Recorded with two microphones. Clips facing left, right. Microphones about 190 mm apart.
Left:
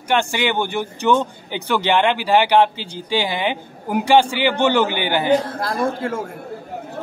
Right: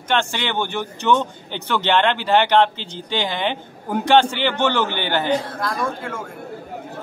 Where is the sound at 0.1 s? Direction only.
10° left (ahead or behind).